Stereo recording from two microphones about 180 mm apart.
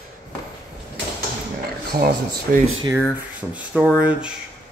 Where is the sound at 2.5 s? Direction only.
60° right (ahead or behind).